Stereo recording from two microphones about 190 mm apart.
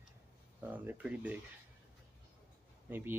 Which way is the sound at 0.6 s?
10° right (ahead or behind).